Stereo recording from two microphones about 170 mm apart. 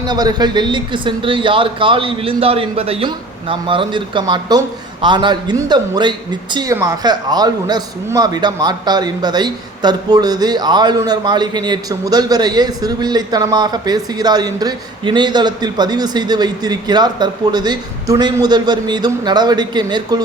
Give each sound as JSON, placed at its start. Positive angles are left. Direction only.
{"t": 0.1, "sound": "a man's voice", "side_deg": -25}